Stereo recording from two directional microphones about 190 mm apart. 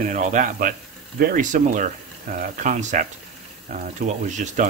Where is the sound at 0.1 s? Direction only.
40° right (ahead or behind).